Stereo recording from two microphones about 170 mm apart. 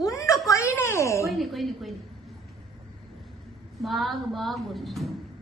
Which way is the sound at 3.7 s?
Centre (ahead or behind).